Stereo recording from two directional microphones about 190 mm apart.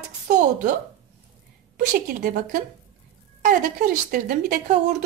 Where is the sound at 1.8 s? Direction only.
45° right (ahead or behind).